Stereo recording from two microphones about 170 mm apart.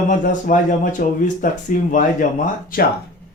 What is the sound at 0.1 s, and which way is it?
Speech, 50° left (ahead or behind).